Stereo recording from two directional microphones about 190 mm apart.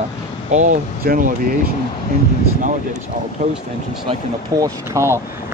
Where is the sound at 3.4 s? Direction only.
40° right (ahead or behind).